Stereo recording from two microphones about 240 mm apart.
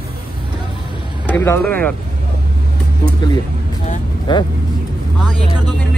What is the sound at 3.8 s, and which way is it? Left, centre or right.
Speech, centre.